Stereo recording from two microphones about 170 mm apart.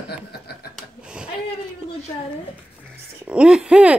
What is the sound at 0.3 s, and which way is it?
Chuckle, 70° left (ahead or behind).